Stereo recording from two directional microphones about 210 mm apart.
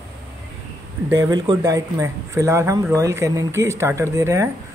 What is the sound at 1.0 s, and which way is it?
Speech, 15° right (ahead or behind).